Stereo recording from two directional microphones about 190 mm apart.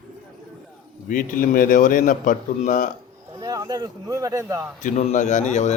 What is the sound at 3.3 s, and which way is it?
A man's voice, 20° right (ahead or behind).